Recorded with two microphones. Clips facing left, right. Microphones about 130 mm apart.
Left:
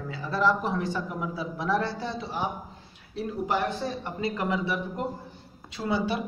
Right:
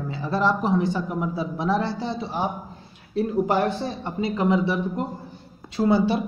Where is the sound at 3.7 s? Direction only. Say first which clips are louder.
Right 3 dB; 30° right (ahead or behind).